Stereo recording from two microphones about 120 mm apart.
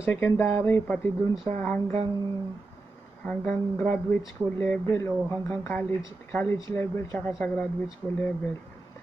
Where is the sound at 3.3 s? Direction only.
10° left (ahead or behind).